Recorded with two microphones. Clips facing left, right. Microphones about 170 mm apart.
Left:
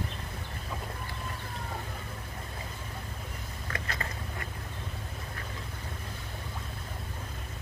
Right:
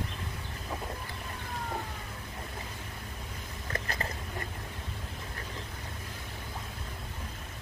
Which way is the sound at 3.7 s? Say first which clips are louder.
Right 2 dB; 30° right (ahead or behind).